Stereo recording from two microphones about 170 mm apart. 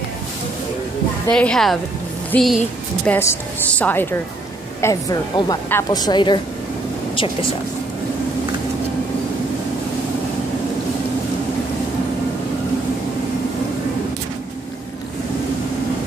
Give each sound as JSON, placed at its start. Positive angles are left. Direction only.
{"t": 1.3, "sound": "a woman's voice", "side_deg": 5}
{"t": 3.1, "sound": "a woman's voice", "side_deg": 10}
{"t": 4.8, "sound": "a woman's voice", "side_deg": 20}